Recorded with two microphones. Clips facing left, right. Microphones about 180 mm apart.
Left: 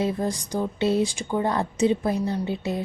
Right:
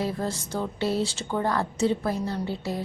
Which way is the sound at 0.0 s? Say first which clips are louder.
Left 3 dB; 20° left (ahead or behind).